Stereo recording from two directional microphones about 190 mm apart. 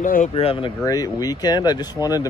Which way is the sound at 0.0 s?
45° left (ahead or behind).